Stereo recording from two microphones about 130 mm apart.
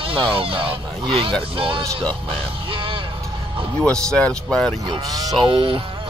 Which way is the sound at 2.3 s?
45° right (ahead or behind).